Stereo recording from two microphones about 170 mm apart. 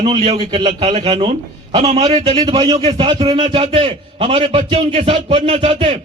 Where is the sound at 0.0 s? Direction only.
35° right (ahead or behind).